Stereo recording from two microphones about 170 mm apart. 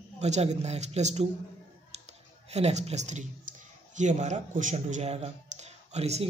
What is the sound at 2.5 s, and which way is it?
Speech, 40° right (ahead or behind).